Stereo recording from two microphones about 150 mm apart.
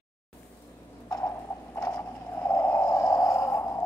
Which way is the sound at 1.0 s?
20° left (ahead or behind).